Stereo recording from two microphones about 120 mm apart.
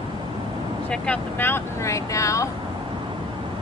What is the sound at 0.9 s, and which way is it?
Speech, 10° left (ahead or behind).